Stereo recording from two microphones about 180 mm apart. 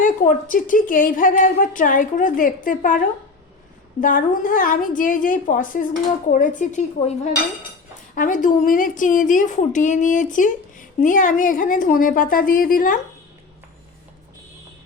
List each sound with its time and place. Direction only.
0.0 s a woman's voice: 45° left (ahead or behind)
4.0 s a woman's voice: 50° left (ahead or behind)